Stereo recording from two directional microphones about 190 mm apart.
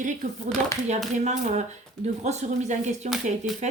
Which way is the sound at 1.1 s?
40° right (ahead or behind).